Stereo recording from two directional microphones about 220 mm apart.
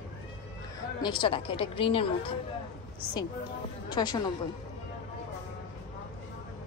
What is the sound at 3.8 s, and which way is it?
Speech, 20° left (ahead or behind).